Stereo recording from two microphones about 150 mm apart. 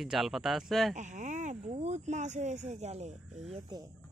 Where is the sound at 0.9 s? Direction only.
55° right (ahead or behind).